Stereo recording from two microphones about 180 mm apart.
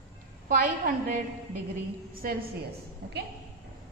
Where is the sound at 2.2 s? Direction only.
55° right (ahead or behind).